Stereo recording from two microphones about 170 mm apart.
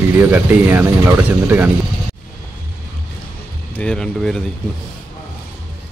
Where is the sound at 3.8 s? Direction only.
5° left (ahead or behind).